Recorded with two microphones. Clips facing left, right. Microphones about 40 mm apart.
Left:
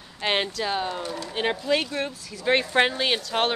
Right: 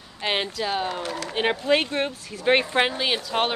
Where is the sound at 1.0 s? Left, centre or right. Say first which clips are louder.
Right 2 dB; right.